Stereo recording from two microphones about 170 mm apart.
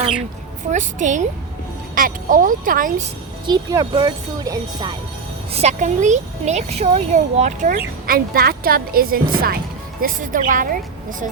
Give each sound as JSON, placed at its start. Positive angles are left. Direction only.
{"t": 0.7, "sound": "speech", "side_deg": -45}
{"t": 3.4, "sound": "speech", "side_deg": -25}
{"t": 5.5, "sound": "speech", "side_deg": -40}
{"t": 8.0, "sound": "a woman's voice", "side_deg": -60}